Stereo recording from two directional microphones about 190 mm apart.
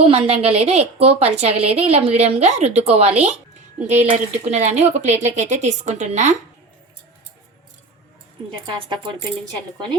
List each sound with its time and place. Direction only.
0.0 s a woman's voice: 30° right (ahead or behind)
8.6 s speech: 25° right (ahead or behind)